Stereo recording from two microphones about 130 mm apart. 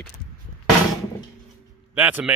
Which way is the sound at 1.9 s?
10° right (ahead or behind).